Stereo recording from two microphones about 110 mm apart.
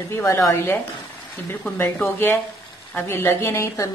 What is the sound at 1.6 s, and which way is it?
Speech, 10° left (ahead or behind).